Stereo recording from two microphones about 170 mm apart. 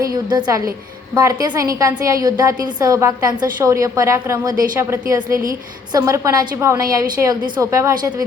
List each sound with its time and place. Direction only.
0.1 s a woman's voice: 25° right (ahead or behind)